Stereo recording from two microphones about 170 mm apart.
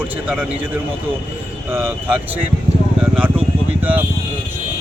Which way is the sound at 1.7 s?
10° right (ahead or behind).